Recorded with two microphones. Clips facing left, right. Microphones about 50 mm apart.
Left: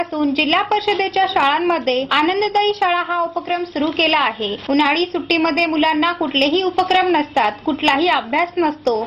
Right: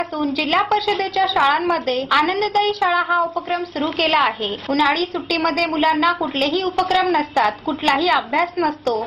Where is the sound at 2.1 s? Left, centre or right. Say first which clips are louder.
Even; left.